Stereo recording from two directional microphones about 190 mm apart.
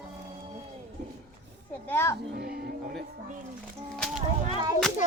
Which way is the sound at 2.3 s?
50° right (ahead or behind).